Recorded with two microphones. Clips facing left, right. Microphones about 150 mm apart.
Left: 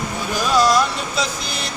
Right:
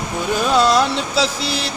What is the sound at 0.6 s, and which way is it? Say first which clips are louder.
Music: even; 30° right (ahead or behind).